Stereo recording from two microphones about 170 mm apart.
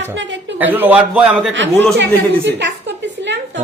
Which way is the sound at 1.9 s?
90° right.